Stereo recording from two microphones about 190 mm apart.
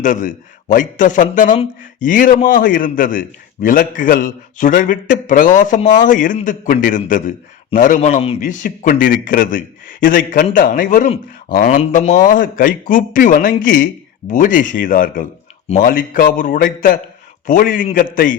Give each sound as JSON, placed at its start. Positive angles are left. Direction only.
{"t": 0.0, "sound": "a man's voice", "side_deg": 45}